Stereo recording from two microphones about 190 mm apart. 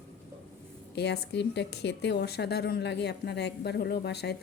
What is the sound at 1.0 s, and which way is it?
Speech, 60° left (ahead or behind).